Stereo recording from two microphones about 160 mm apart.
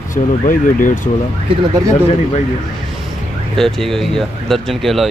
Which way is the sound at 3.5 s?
5° left (ahead or behind).